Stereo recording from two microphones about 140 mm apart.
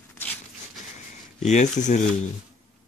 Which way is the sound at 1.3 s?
55° left (ahead or behind).